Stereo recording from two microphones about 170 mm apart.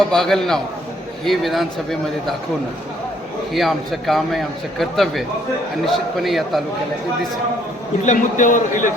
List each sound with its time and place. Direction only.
0.0 s a man's voice: 5° left (ahead or behind)
3.5 s a man's voice: centre (ahead or behind)
8.0 s a man's voice: 45° left (ahead or behind)